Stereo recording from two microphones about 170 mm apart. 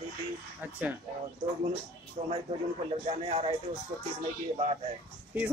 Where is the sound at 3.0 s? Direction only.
40° right (ahead or behind).